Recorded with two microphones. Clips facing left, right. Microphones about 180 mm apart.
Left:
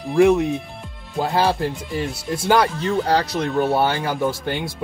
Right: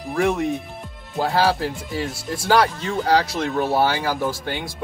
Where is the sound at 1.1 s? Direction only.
Centre (ahead or behind).